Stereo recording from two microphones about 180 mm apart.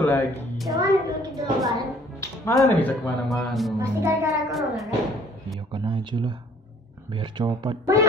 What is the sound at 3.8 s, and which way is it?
Speech, 15° right (ahead or behind).